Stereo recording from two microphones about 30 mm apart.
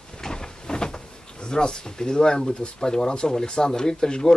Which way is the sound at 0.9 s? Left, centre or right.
Left.